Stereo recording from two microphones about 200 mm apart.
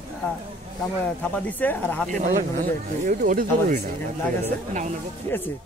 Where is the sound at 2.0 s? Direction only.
40° right (ahead or behind).